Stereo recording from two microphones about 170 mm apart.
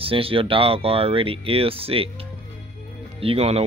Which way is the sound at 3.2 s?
35° right (ahead or behind).